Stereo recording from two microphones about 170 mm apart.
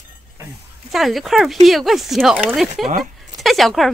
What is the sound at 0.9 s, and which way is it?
Speech, centre (ahead or behind).